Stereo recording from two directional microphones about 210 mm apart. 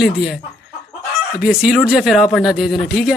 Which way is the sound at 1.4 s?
5° right (ahead or behind).